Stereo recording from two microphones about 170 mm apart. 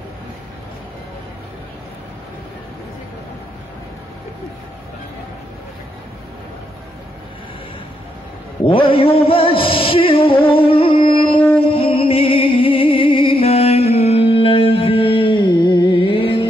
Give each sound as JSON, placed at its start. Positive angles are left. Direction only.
{"t": 8.6, "sound": "music", "side_deg": 30}